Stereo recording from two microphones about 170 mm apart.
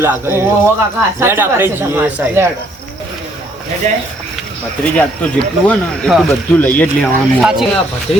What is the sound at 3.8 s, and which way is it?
Speech, 40° right (ahead or behind).